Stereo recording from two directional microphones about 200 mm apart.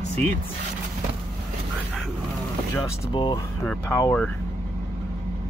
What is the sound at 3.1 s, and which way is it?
Speech, 25° left (ahead or behind).